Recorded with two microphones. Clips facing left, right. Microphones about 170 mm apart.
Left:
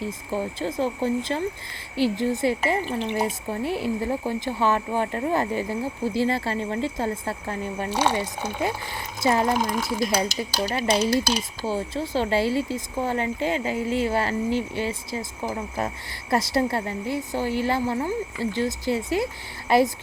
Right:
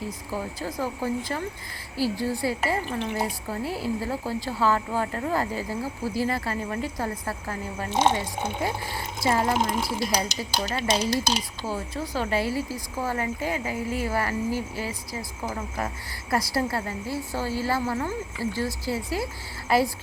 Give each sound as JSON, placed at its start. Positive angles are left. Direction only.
{"t": 0.0, "sound": "speech", "side_deg": 25}
{"t": 7.9, "sound": "speech", "side_deg": -25}
{"t": 9.2, "sound": "speech", "side_deg": 25}
{"t": 9.5, "sound": "speech", "side_deg": -25}
{"t": 11.2, "sound": "speech", "side_deg": -20}
{"t": 11.6, "sound": "speech", "side_deg": 25}